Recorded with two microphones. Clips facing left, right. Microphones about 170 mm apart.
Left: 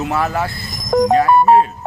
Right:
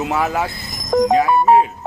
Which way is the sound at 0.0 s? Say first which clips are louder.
Even; 15° right (ahead or behind).